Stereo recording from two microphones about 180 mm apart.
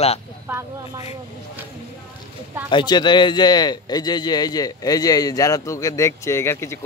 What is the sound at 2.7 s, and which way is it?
A man's voice, 25° left (ahead or behind).